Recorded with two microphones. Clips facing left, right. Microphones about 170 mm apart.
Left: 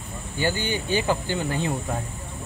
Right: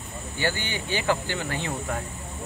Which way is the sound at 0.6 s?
45° left (ahead or behind).